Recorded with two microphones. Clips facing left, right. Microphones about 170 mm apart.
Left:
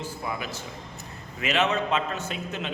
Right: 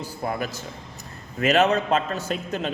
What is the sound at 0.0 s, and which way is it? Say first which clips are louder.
A man's voice: right 4 dB; 45° right (ahead or behind).